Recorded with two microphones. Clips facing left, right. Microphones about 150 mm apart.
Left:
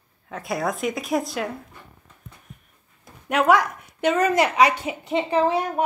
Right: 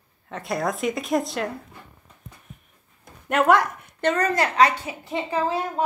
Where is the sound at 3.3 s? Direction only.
Centre (ahead or behind).